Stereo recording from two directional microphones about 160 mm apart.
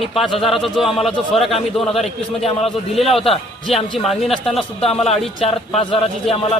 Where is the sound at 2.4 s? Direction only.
40° left (ahead or behind).